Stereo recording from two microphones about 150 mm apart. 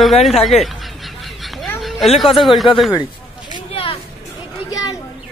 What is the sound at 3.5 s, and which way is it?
Vehicle, 35° left (ahead or behind).